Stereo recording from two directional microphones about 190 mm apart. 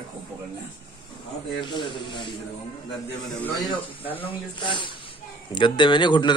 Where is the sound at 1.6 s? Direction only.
25° left (ahead or behind).